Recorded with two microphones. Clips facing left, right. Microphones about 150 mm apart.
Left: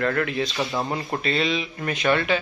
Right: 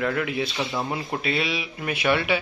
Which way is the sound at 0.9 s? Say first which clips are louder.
Left 1 dB; 5° right (ahead or behind).